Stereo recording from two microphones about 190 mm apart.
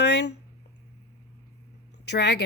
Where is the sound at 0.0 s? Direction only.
60° left (ahead or behind).